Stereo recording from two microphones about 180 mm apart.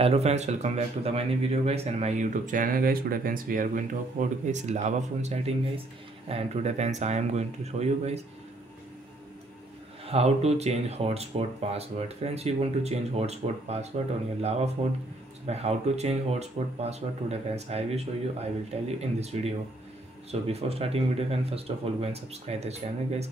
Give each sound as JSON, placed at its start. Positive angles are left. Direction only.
{"t": 0.0, "sound": "speech", "side_deg": -35}
{"t": 10.0, "sound": "speech", "side_deg": -35}